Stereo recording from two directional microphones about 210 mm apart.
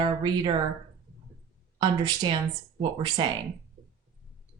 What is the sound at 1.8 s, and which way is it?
Speech, 20° right (ahead or behind).